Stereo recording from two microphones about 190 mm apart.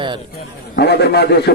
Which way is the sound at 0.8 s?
60° left (ahead or behind).